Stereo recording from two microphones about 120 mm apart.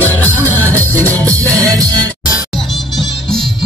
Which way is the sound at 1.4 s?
25° right (ahead or behind).